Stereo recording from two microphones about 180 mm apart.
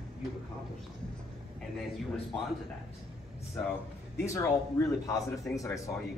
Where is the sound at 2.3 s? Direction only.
5° left (ahead or behind).